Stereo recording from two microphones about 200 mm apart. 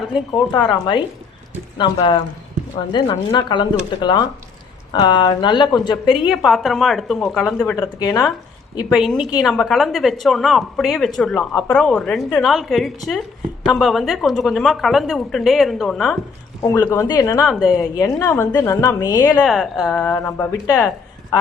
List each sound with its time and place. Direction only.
0.7 s speech: 25° left (ahead or behind)
6.3 s speech: centre (ahead or behind)
7.8 s a woman's voice: 20° left (ahead or behind)
8.9 s a woman's voice: centre (ahead or behind); by 17.4 s 20° left (ahead or behind)
17.4 s speech: centre (ahead or behind)
17.9 s a woman's voice: 15° left (ahead or behind)
19.4 s speech: centre (ahead or behind)